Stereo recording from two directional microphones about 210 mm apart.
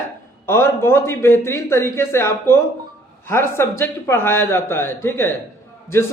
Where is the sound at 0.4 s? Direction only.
10° left (ahead or behind).